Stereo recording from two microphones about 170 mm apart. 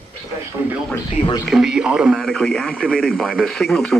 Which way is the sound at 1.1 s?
30° left (ahead or behind).